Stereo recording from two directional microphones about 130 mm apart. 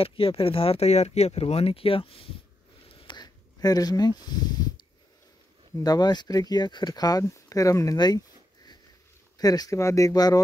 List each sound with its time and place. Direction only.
0.0 s speech: 45° left (ahead or behind)
3.0 s a sound: 35° left (ahead or behind)
5.8 s speech: 30° left (ahead or behind)
9.4 s speech: 30° left (ahead or behind)